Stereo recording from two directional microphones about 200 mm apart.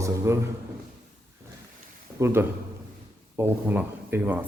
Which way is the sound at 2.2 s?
10° right (ahead or behind).